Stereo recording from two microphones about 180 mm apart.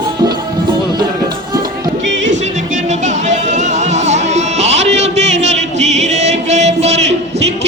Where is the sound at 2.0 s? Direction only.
90° right.